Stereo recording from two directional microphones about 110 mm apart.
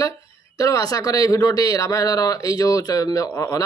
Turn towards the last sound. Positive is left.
turn(degrees=30)  # may be behind; listen again after turning